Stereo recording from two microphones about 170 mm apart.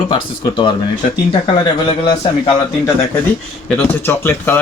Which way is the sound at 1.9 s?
30° left (ahead or behind).